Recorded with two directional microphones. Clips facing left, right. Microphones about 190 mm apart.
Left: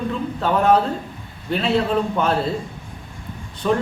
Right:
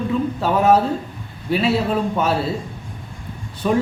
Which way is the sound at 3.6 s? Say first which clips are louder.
Right 1 dB; 10° right (ahead or behind).